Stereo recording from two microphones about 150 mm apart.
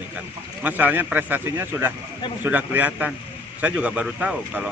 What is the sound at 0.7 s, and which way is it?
A man's voice, 10° right (ahead or behind).